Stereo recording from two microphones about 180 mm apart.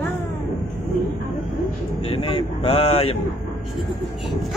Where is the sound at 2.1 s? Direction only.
30° left (ahead or behind).